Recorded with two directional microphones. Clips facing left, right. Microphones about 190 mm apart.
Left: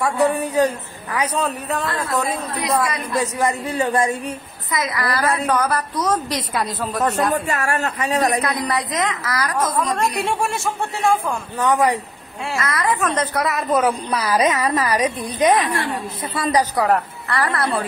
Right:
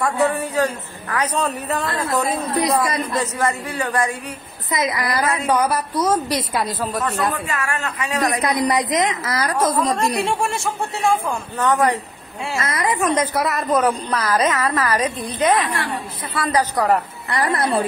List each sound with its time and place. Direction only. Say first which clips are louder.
0.3 s speech: left 2 dB; 15° left (ahead or behind)
1.4 s speech: even; centre (ahead or behind)
3.2 s a man's voice: left 4 dB; 15° left (ahead or behind)
4.6 s a woman's voice: right 1 dB; 20° right (ahead or behind); by 7.0 s centre (ahead or behind)
7.4 s speech: left 3 dB; 40° left (ahead or behind)
8.4 s a woman's voice: right 3 dB; 20° right (ahead or behind)
9.9 s speech: right 1 dB; centre (ahead or behind)
11.6 s speech: even; 10° left (ahead or behind)
12.5 s a man's voice: even; 20° right (ahead or behind); by 16.6 s 20° left (ahead or behind)
16.7 s speech: even; centre (ahead or behind)
17.3 s a woman's voice: right 1 dB; 20° right (ahead or behind)